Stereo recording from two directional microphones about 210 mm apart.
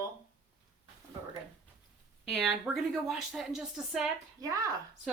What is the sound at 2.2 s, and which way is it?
Speech, centre (ahead or behind).